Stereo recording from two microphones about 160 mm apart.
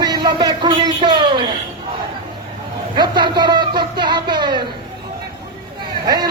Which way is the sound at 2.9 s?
30° right (ahead or behind).